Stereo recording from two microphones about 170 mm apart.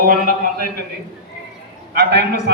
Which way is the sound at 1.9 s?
65° right (ahead or behind).